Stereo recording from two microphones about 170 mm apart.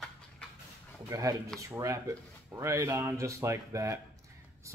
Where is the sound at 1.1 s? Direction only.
20° right (ahead or behind).